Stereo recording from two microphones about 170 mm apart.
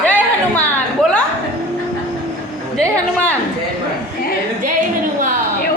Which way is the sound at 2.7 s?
10° left (ahead or behind).